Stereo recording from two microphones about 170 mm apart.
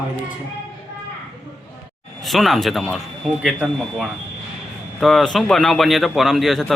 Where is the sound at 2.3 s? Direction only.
Centre (ahead or behind).